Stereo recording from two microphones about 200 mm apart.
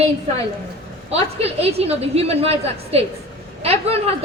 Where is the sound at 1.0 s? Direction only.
30° right (ahead or behind).